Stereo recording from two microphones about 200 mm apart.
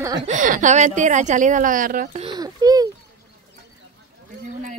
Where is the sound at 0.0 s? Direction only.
20° right (ahead or behind).